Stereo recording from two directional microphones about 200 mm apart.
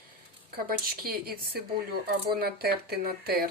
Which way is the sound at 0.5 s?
50° right (ahead or behind).